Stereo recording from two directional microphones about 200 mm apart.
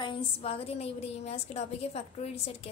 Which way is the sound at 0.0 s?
25° left (ahead or behind).